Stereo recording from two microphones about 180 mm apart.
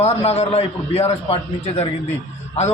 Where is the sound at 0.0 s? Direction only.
35° left (ahead or behind).